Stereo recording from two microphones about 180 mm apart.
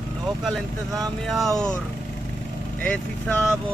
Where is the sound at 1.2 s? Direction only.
Centre (ahead or behind).